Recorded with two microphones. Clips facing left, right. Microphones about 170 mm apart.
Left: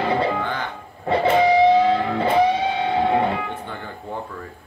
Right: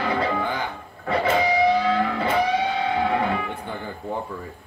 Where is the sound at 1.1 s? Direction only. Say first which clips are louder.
Left 5 dB; 30° left (ahead or behind).